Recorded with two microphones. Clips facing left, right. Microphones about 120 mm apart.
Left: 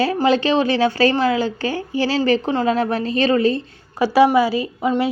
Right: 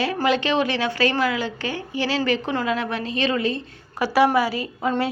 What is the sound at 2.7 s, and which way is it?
Speech, 40° left (ahead or behind).